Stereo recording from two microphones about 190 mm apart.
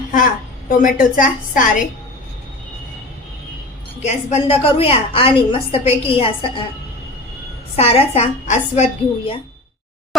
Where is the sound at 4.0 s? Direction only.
35° left (ahead or behind).